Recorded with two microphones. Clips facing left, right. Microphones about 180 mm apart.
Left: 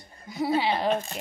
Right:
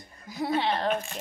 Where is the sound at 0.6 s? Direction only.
10° left (ahead or behind).